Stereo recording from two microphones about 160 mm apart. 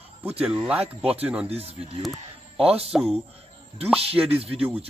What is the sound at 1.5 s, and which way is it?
Speech, 40° right (ahead or behind).